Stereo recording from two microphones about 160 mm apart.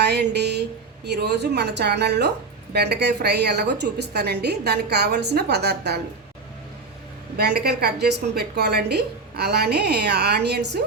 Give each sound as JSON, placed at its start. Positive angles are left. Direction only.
{"t": 0.0, "sound": "a sound", "side_deg": -90}
{"t": 1.0, "sound": "a woman's voice", "side_deg": -90}
{"t": 7.3, "sound": "a woman's voice", "side_deg": -90}